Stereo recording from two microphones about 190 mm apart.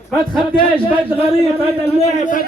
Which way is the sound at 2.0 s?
35° left (ahead or behind).